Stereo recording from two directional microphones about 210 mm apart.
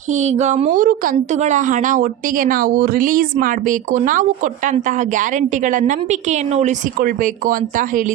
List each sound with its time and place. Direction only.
0.1 s a woman's voice: 35° right (ahead or behind)